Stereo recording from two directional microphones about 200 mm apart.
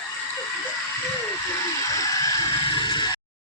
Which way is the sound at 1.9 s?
15° left (ahead or behind).